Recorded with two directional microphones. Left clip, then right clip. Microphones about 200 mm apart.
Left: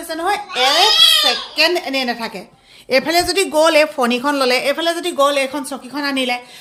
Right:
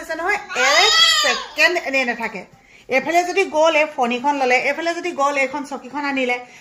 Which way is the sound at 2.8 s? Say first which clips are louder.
Left 2 dB; 30° left (ahead or behind).